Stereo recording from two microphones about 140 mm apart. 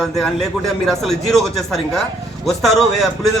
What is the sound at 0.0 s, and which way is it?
Speech, 5° left (ahead or behind).